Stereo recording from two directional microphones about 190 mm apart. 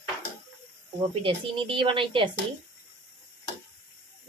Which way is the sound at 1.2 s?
25° right (ahead or behind).